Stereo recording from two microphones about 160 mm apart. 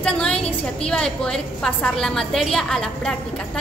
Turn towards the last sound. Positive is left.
turn(degrees=5)  # may be behind; listen again after turning